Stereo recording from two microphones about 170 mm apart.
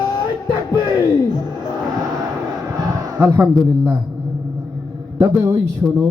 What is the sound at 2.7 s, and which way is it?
A man's voice, 20° right (ahead or behind).